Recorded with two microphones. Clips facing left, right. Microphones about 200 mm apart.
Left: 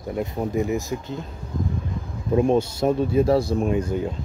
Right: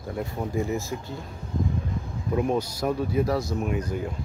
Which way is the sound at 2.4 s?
25° left (ahead or behind).